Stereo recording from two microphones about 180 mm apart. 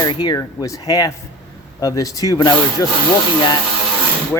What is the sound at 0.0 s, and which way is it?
Speech, 25° left (ahead or behind).